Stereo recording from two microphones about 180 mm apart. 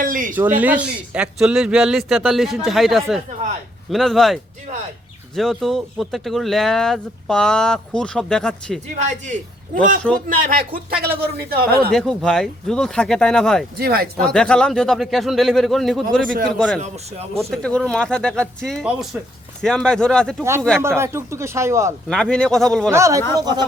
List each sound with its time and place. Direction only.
0.0 s a man's voice: 50° right (ahead or behind)
0.3 s speech: 10° right (ahead or behind)
9.0 s a man's voice: 40° right (ahead or behind); by 11.8 s 55° right (ahead or behind)
11.9 s speech: 5° left (ahead or behind)
13.7 s speech: 60° right (ahead or behind)
14.2 s speech: 5° left (ahead or behind)
19.1 s speech: 10° right (ahead or behind)
19.6 s speech: 5° left (ahead or behind)
21.0 s speech: 15° right (ahead or behind)
22.1 s speech: 5° left (ahead or behind)
22.9 s speech: 15° right (ahead or behind)